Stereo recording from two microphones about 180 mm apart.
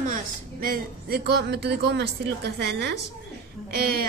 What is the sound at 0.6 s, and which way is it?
A man's voice, 60° right (ahead or behind).